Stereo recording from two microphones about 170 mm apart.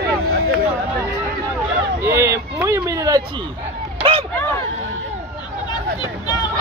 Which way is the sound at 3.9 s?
30° right (ahead or behind).